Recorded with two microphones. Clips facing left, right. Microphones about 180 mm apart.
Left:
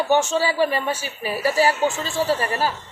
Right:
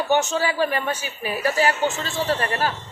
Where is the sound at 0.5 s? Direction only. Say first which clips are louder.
Left 2 dB; 5° left (ahead or behind).